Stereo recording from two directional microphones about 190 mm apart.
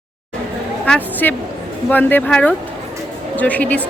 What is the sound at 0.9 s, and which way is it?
A woman's voice, 5° left (ahead or behind).